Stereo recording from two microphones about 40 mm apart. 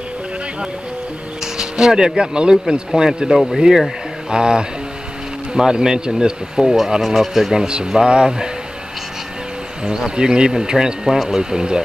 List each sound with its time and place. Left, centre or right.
1.4 s speech: centre
7.5 s speech: right
9.8 s speech: centre